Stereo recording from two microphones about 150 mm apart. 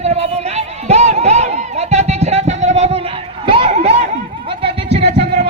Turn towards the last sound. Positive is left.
turn(degrees=-45)  # may be behind; listen again after turning